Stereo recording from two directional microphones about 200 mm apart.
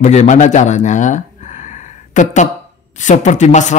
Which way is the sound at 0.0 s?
35° left (ahead or behind).